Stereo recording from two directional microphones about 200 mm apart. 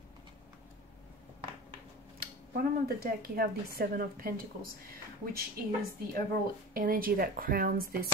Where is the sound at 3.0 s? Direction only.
50° right (ahead or behind).